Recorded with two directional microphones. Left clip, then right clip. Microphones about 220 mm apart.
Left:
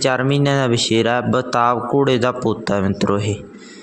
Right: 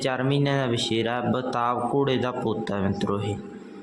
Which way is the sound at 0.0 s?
25° left (ahead or behind).